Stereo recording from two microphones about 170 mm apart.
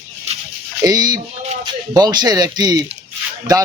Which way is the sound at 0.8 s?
20° right (ahead or behind).